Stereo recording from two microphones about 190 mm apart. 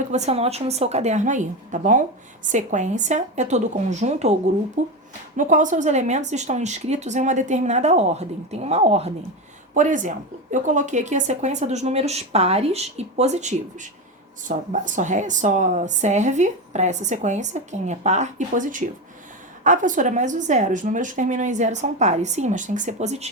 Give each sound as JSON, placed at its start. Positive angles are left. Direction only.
{"t": 0.1, "sound": "a woman's voice", "side_deg": -35}